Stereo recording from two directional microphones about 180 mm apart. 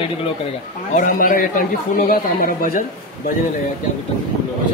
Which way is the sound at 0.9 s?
45° left (ahead or behind).